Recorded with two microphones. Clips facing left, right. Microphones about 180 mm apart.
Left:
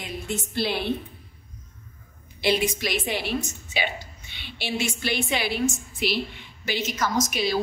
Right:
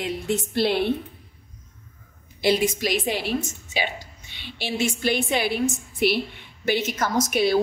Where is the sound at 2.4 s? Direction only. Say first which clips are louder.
Right 3 dB; 40° right (ahead or behind).